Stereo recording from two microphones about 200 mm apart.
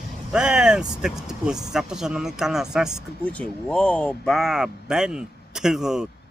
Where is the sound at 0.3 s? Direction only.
5° right (ahead or behind).